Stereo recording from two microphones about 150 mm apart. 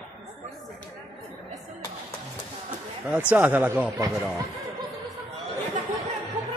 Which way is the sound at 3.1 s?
10° right (ahead or behind).